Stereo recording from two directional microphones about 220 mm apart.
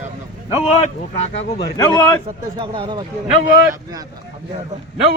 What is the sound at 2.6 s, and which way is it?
Speech, 20° right (ahead or behind).